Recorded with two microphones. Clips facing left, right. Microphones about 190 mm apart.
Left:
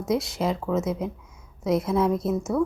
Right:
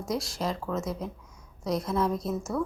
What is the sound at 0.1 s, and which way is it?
Speech, centre (ahead or behind).